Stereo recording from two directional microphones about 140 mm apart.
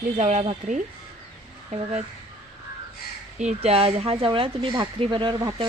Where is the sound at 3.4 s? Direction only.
50° right (ahead or behind).